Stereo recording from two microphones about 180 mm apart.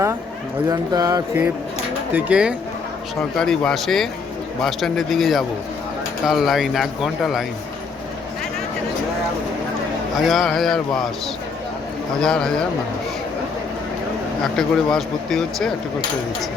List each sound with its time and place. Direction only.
0.7 s mantra: 20° right (ahead or behind)
2.1 s speech: 5° right (ahead or behind)
10.2 s speech: centre (ahead or behind)
12.2 s speech: 5° left (ahead or behind)
14.4 s speech: 5° left (ahead or behind)